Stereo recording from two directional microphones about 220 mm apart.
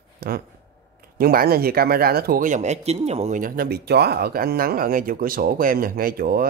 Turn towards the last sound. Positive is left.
turn(degrees=-40)  # may be behind; listen again after turning